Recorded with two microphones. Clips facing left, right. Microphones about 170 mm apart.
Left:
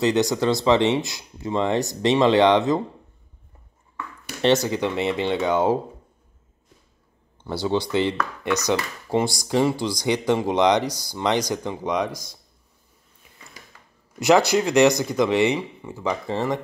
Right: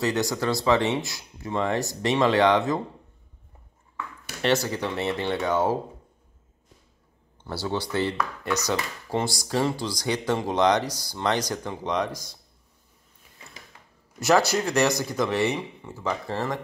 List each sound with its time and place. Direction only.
0.0 s speech: 20° left (ahead or behind)
4.4 s speech: 20° left (ahead or behind)
7.9 s speech: 20° left (ahead or behind)
14.5 s speech: 15° left (ahead or behind)